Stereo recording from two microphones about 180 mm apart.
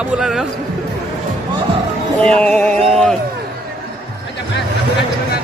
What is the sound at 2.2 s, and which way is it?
Speech, 5° left (ahead or behind).